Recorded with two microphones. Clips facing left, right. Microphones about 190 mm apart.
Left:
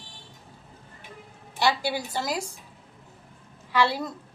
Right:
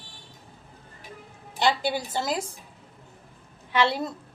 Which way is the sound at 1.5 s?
20° right (ahead or behind).